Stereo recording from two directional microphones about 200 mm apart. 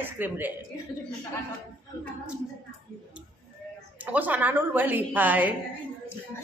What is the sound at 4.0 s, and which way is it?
A woman's voice, 10° right (ahead or behind).